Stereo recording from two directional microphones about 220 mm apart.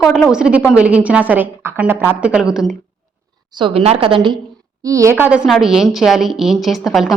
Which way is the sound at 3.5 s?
25° right (ahead or behind).